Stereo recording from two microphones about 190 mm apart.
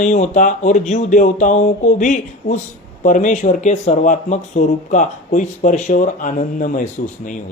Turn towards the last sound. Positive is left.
turn(degrees=40)  # may be behind; listen again after turning